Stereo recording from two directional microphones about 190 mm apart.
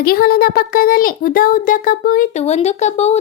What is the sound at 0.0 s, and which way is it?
A child's voice, 50° left (ahead or behind).